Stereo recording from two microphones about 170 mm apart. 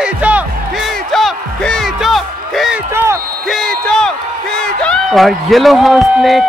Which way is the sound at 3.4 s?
Centre (ahead or behind).